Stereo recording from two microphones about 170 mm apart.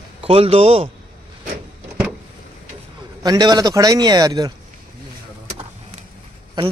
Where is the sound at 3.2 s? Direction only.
25° right (ahead or behind).